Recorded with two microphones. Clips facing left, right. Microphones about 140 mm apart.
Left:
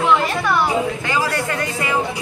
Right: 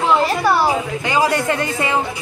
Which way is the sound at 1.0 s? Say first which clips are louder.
Right 4 dB; 20° right (ahead or behind).